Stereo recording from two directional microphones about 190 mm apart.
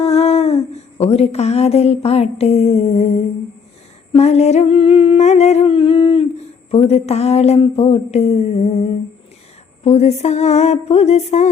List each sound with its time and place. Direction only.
0.0 s speech: 35° left (ahead or behind)